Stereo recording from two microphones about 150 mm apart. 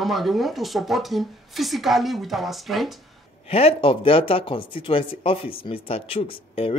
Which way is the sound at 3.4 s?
40° left (ahead or behind).